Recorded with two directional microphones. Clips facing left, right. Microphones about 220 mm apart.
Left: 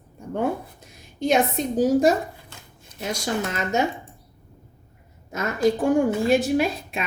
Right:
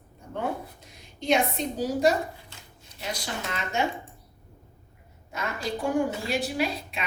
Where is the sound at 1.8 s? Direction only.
50° left (ahead or behind).